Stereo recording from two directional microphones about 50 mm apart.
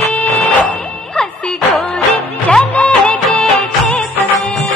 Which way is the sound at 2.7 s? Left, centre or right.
Left.